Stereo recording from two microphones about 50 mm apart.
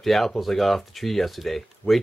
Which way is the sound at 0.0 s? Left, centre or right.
Centre.